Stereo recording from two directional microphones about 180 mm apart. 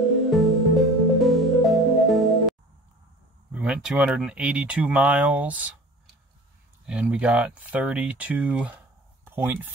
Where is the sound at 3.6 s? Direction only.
5° right (ahead or behind).